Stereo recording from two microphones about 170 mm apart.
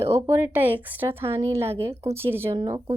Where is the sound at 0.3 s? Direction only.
15° right (ahead or behind).